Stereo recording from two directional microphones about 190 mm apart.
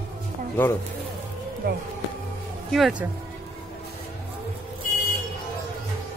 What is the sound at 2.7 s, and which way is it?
Speech, 5° right (ahead or behind).